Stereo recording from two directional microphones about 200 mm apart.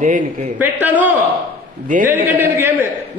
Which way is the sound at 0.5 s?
10° right (ahead or behind).